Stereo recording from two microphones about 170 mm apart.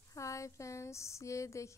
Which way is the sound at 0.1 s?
20° left (ahead or behind).